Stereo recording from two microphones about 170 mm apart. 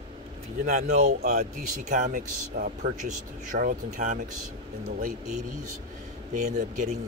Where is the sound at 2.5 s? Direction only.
65° right (ahead or behind).